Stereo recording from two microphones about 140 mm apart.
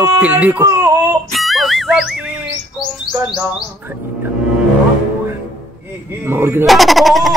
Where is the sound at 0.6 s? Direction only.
20° right (ahead or behind).